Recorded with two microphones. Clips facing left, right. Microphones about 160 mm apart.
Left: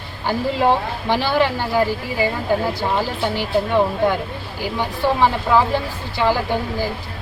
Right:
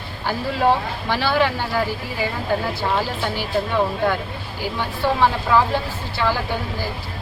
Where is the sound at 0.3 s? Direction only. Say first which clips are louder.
Left 2 dB; 15° left (ahead or behind).